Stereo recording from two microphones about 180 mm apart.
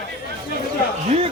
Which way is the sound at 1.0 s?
35° right (ahead or behind).